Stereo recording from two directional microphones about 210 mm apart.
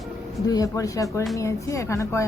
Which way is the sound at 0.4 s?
15° left (ahead or behind).